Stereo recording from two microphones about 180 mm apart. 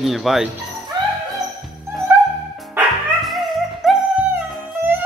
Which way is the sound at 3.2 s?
Centre (ahead or behind).